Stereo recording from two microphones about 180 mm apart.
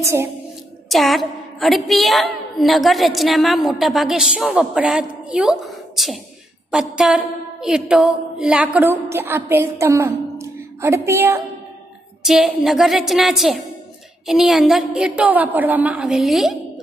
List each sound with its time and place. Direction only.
0.0 s a woman's voice: 15° right (ahead or behind)
0.8 s a woman's voice: centre (ahead or behind)
12.2 s a woman's voice: centre (ahead or behind)